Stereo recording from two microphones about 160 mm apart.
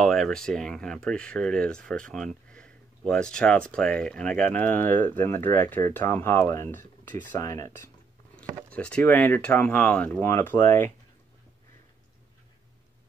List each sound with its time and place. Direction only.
0.0 s speech: 5° left (ahead or behind); by 7.8 s 20° left (ahead or behind)
8.7 s speech: 5° left (ahead or behind)